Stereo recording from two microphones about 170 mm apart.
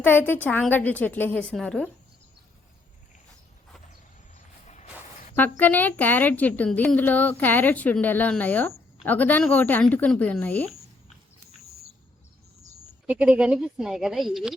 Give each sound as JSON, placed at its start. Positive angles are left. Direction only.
{"t": 0.0, "sound": "a woman's voice", "side_deg": 10}
{"t": 4.6, "sound": "a sound", "side_deg": 40}
{"t": 5.4, "sound": "a woman's voice", "side_deg": 10}
{"t": 13.1, "sound": "a woman's voice", "side_deg": -10}